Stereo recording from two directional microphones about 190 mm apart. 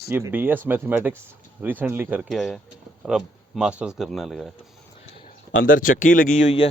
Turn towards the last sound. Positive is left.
turn(degrees=35)  # may be behind; listen again after turning